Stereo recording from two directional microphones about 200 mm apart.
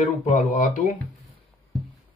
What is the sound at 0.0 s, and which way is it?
Speech, 40° left (ahead or behind).